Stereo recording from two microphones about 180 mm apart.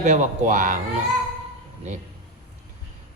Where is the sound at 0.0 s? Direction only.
40° right (ahead or behind).